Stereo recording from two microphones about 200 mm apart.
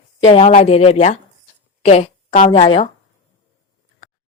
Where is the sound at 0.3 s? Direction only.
30° left (ahead or behind).